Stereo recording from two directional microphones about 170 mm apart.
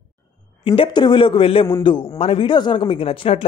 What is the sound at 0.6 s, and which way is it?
Speech, 30° left (ahead or behind).